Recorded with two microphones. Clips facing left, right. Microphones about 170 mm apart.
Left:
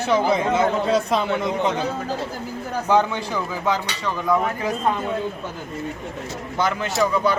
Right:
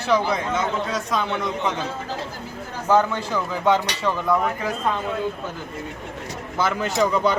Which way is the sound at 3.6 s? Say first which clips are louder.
Right 6 dB; centre (ahead or behind).